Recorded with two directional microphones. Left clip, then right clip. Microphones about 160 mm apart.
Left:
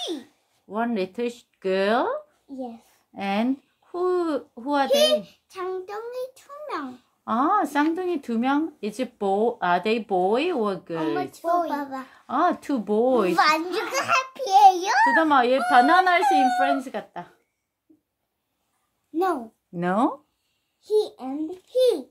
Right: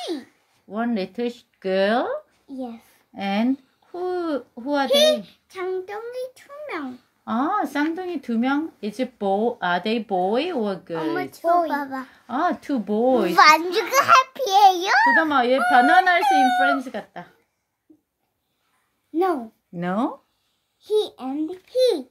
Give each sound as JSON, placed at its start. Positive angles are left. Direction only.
{"t": 0.0, "sound": "a sound", "side_deg": 20}
{"t": 0.7, "sound": "speech", "side_deg": 40}
{"t": 2.4, "sound": "a child's voice", "side_deg": 15}
{"t": 3.2, "sound": "speech", "side_deg": 40}
{"t": 4.8, "sound": "a child's voice", "side_deg": 20}
{"t": 7.2, "sound": "a child's voice", "side_deg": 40}
{"t": 11.6, "sound": "a child's voice", "side_deg": -5}
{"t": 12.1, "sound": "a child's voice", "side_deg": 40}
{"t": 13.3, "sound": "a child's voice", "side_deg": -15}
{"t": 15.2, "sound": "a child's voice", "side_deg": 45}
{"t": 19.7, "sound": "a child's voice", "side_deg": 40}
{"t": 20.8, "sound": "a child's voice", "side_deg": 20}